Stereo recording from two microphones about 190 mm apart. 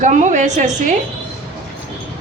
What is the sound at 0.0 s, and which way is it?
Speech, 40° right (ahead or behind).